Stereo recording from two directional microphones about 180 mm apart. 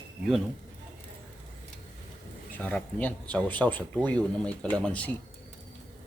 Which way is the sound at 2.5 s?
10° left (ahead or behind).